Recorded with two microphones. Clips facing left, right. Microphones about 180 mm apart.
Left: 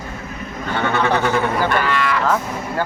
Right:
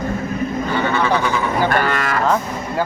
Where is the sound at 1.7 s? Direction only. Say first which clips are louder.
Even; 45° right (ahead or behind).